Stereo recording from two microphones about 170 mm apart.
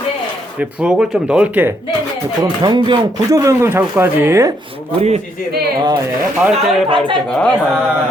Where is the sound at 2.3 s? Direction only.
25° right (ahead or behind).